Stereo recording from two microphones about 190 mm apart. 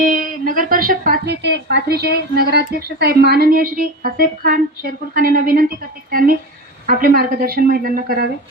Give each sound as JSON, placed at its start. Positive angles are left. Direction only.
{"t": 0.0, "sound": "a woman's voice", "side_deg": -45}